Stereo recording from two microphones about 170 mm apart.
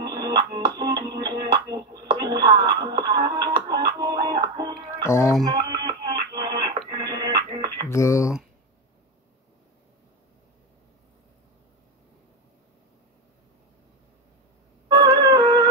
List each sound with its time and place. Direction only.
0.0 s music: 25° right (ahead or behind)
5.0 s speech: 15° left (ahead or behind)
5.4 s music: 25° right (ahead or behind)
7.9 s a sound: 15° left (ahead or behind)
14.9 s music: 25° right (ahead or behind)